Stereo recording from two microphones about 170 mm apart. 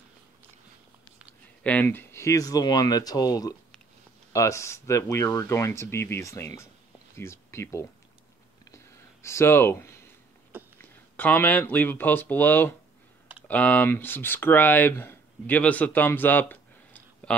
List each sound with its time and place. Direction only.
1.6 s speech: 10° left (ahead or behind)
8.6 s a sound: 15° left (ahead or behind)
10.8 s speech: 10° left (ahead or behind)